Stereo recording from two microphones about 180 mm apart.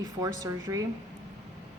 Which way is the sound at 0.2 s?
20° right (ahead or behind).